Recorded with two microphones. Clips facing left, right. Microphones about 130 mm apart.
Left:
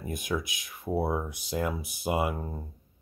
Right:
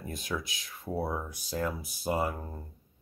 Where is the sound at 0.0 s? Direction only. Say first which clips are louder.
Left 4 dB; 15° left (ahead or behind).